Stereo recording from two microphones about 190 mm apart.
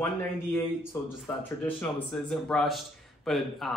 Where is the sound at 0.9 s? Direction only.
15° left (ahead or behind).